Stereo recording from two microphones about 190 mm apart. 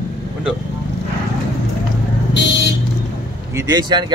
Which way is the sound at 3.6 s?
20° right (ahead or behind).